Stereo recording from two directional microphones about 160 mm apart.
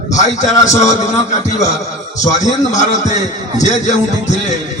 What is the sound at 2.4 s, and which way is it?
Speech, 50° left (ahead or behind).